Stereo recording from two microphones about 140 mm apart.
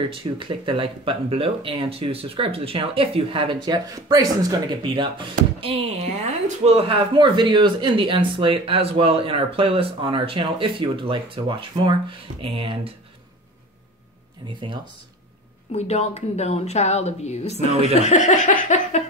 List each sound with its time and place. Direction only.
0.4 s speech: 40° right (ahead or behind)
15.7 s a woman's voice: 50° left (ahead or behind)
17.9 s laughter: 55° left (ahead or behind)